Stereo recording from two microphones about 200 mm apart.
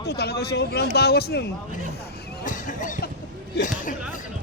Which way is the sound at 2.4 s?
40° left (ahead or behind).